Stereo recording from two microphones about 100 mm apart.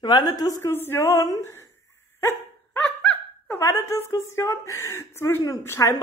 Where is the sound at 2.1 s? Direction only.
30° left (ahead or behind).